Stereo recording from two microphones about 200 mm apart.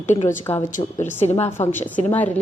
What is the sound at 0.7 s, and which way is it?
Speech, 35° left (ahead or behind).